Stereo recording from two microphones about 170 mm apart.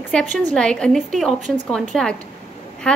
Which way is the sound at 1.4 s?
45° right (ahead or behind).